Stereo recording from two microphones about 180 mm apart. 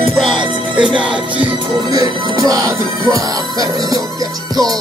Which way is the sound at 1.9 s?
20° right (ahead or behind).